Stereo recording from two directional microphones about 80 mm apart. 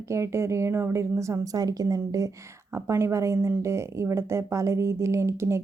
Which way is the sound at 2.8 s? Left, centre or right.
Right.